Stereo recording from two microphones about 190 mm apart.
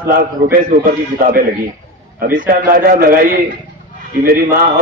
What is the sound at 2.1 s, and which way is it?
A man's voice, 50° right (ahead or behind).